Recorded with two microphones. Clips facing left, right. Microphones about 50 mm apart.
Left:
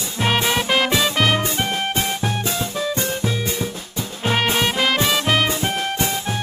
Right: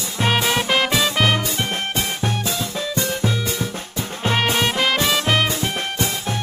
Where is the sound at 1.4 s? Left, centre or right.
Left.